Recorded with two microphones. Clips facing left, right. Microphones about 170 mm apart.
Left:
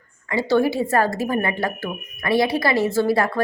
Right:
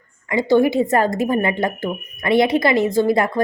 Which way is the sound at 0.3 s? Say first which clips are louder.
Right 3 dB; 15° right (ahead or behind).